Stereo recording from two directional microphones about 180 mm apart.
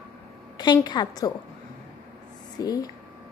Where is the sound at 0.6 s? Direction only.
25° left (ahead or behind).